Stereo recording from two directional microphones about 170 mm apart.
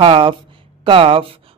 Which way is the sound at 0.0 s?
30° right (ahead or behind).